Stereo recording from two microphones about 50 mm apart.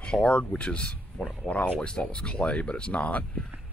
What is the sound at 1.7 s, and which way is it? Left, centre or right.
Speech, centre.